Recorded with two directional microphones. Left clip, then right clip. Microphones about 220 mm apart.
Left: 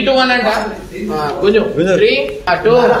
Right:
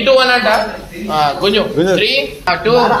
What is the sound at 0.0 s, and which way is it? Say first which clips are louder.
A man's voice: right 2 dB; 45° right (ahead or behind).